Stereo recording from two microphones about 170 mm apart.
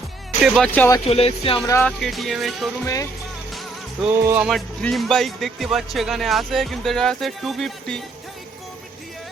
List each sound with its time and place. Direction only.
0.4 s speech: centre (ahead or behind)
0.7 s speech: 10° left (ahead or behind)
1.0 s speech: 35° left (ahead or behind)
1.8 s speech: centre (ahead or behind)
2.8 s music: 20° left (ahead or behind)
4.1 s music: 15° right (ahead or behind)
4.4 s speech: centre (ahead or behind)